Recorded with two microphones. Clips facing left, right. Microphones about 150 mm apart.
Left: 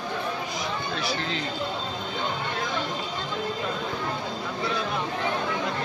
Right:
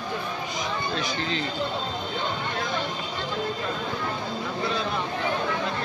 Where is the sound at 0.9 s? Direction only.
5° left (ahead or behind).